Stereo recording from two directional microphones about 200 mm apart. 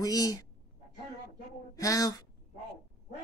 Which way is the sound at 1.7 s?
15° left (ahead or behind).